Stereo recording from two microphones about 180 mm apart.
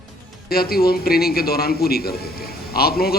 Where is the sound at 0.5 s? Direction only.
55° left (ahead or behind).